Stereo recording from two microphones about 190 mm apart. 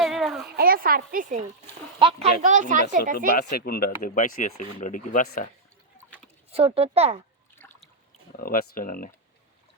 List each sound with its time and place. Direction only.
0.0 s a sound: centre (ahead or behind)
0.5 s a woman's voice: 50° right (ahead or behind)
2.0 s a child's voice: 25° right (ahead or behind)
2.4 s a child's voice: 40° right (ahead or behind)
3.3 s speech: 55° left (ahead or behind)
6.5 s a child's voice: 30° right (ahead or behind)
7.6 s a sound: 10° left (ahead or behind)
8.4 s speech: 50° left (ahead or behind)